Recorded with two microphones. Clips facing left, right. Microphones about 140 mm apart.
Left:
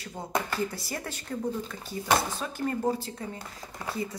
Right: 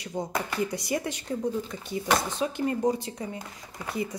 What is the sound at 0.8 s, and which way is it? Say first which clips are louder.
Speech: right 7 dB; 15° right (ahead or behind).